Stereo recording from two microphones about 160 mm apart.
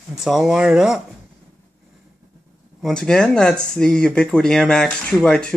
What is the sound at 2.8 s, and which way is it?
Speech, 5° left (ahead or behind).